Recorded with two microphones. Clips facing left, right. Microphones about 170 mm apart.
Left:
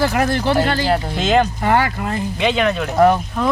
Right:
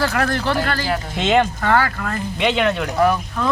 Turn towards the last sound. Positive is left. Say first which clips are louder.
# left 4 dB
turn(degrees=30)  # may be behind; listen again after turning